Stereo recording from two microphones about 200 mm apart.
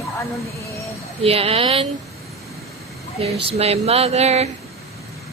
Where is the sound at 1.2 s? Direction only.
30° right (ahead or behind).